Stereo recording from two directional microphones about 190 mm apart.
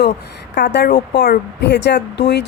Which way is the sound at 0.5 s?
60° left (ahead or behind).